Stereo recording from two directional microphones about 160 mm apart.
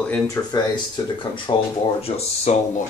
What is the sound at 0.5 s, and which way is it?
Speech, 30° left (ahead or behind).